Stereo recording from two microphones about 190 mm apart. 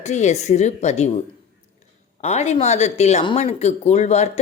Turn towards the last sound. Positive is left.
turn(degrees=35)  # may be behind; listen again after turning